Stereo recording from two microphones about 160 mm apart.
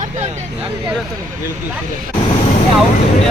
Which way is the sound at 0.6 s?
5° right (ahead or behind).